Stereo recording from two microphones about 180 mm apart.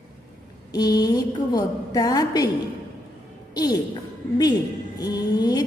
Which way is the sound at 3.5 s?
20° left (ahead or behind).